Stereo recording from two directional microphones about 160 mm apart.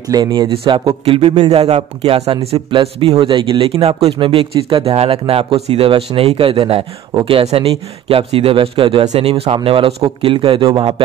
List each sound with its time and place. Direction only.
0.1 s speech: 25° right (ahead or behind)